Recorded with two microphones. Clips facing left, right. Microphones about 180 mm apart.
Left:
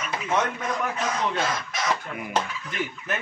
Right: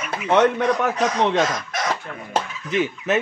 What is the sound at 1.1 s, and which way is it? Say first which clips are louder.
Speech: right 7 dB; 75° right (ahead or behind).